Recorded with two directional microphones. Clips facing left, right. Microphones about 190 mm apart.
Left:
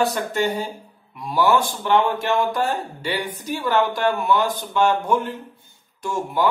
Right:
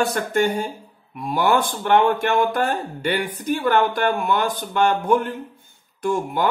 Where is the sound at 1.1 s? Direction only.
55° right (ahead or behind).